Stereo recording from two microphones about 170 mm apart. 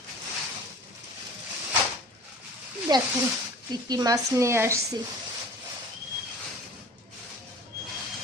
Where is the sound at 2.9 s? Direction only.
25° right (ahead or behind).